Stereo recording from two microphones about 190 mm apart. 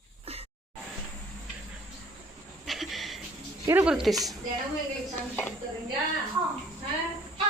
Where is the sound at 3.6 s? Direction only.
10° right (ahead or behind).